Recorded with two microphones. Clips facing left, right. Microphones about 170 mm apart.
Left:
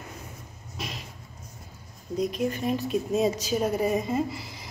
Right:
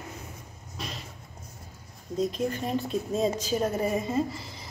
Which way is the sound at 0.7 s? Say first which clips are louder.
Left 1 dB; 15° left (ahead or behind).